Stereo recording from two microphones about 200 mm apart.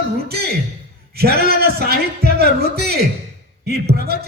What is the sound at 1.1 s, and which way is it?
A man's voice, 50° right (ahead or behind).